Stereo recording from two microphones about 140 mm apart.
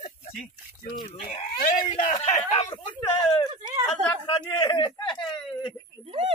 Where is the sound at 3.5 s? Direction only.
30° right (ahead or behind).